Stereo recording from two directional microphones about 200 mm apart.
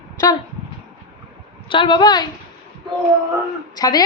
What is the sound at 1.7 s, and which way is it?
Speech, 25° left (ahead or behind).